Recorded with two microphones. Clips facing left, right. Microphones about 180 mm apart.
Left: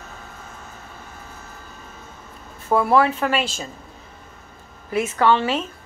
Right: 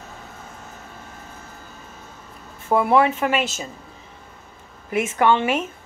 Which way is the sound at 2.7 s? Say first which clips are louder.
Even; 20° right (ahead or behind).